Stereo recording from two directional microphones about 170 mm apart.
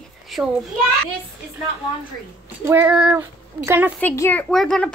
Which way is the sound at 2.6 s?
10° right (ahead or behind).